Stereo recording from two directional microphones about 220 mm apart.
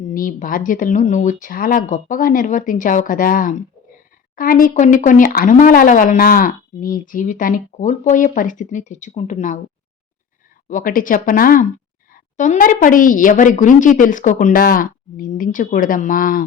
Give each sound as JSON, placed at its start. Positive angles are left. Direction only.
{"t": 0.1, "sound": "speech", "side_deg": 40}
{"t": 10.7, "sound": "speech", "side_deg": 40}